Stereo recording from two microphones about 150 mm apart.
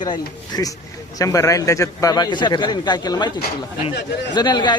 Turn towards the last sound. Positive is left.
turn(degrees=30)  # may be behind; listen again after turning